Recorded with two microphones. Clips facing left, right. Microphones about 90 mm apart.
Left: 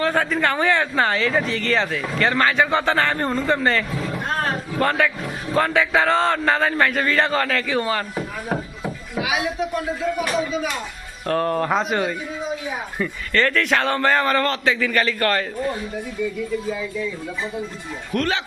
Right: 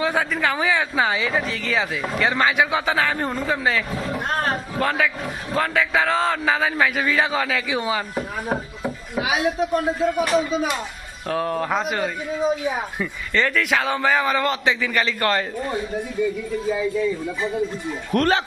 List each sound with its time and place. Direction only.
0.0 s speech: 5° right (ahead or behind)
11.3 s speech: 5° right (ahead or behind)
13.0 s a man's voice: 10° right (ahead or behind)
18.1 s speech: 40° right (ahead or behind)